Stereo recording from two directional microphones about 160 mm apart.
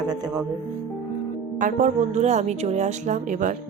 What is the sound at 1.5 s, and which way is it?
A woman's voice, 55° right (ahead or behind).